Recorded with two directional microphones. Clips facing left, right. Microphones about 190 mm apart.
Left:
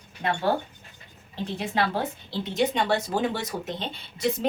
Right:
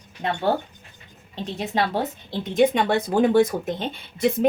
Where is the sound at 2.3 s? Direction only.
50° right (ahead or behind).